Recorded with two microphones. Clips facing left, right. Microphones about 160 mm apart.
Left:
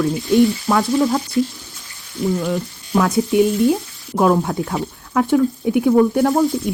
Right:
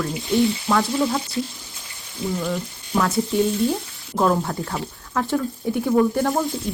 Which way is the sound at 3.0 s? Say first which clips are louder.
Left 5 dB; 10° left (ahead or behind).